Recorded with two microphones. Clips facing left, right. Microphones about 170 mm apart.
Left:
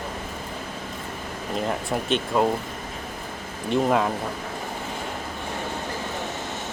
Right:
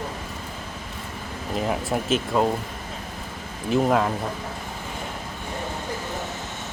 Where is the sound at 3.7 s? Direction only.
Centre (ahead or behind).